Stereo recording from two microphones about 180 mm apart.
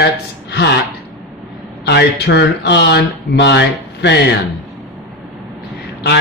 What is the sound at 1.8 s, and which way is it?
Speech, 70° left (ahead or behind).